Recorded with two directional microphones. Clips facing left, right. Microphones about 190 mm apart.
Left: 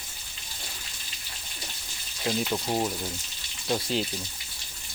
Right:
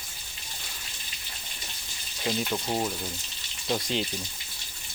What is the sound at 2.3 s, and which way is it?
Speech, 5° left (ahead or behind).